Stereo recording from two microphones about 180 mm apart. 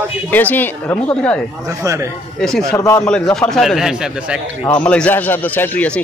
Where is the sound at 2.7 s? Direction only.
20° left (ahead or behind).